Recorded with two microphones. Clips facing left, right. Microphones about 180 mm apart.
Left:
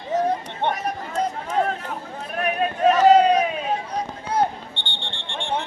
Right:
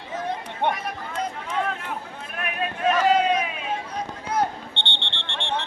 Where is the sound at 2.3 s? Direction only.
35° left (ahead or behind).